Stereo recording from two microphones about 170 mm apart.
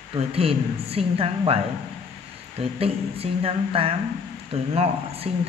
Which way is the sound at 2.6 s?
35° right (ahead or behind).